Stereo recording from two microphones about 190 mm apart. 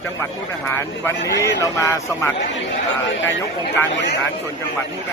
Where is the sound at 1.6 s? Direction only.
15° left (ahead or behind).